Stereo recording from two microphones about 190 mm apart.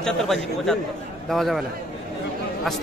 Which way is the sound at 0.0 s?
Centre (ahead or behind).